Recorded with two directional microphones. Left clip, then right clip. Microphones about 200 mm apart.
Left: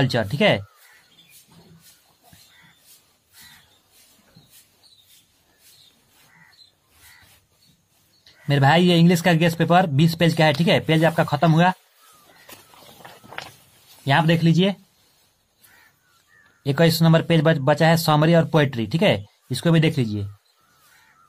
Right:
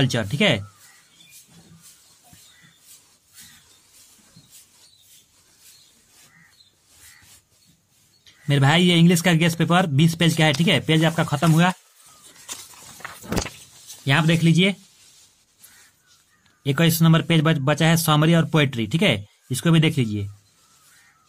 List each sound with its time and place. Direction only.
0.0 s speech: 15° right (ahead or behind)
8.3 s speech: 15° right (ahead or behind)
14.0 s speech: 20° right (ahead or behind)
16.6 s speech: 15° right (ahead or behind)